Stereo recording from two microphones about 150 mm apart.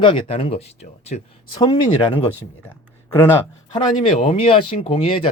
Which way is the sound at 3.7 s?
35° left (ahead or behind).